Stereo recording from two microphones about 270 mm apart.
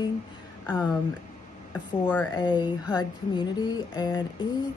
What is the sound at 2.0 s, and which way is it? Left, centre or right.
Speech, centre.